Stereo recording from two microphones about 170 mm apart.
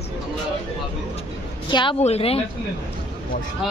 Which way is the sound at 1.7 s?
30° left (ahead or behind).